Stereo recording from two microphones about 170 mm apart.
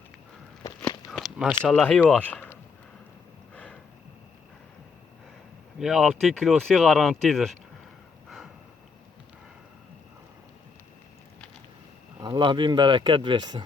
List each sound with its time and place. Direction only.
1.1 s walk: centre (ahead or behind)
1.6 s speech: 5° left (ahead or behind)
3.5 s a sound: 5° left (ahead or behind)
5.8 s speech: centre (ahead or behind)
12.2 s speech: 25° right (ahead or behind)